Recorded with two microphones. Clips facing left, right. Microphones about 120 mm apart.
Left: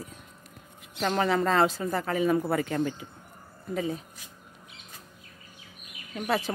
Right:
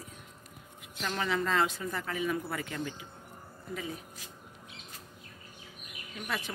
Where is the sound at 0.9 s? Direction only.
45° left (ahead or behind).